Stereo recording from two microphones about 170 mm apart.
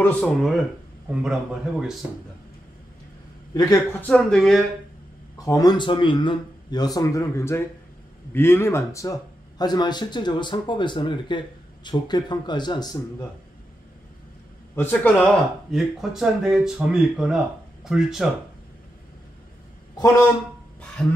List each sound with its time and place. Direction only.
0.0 s speech: 5° left (ahead or behind)
3.5 s speech: 20° left (ahead or behind)
4.0 s speech: 5° left (ahead or behind)
5.4 s speech: 20° left (ahead or behind)
14.8 s speech: 10° left (ahead or behind)